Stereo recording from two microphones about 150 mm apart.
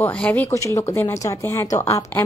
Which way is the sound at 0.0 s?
10° left (ahead or behind).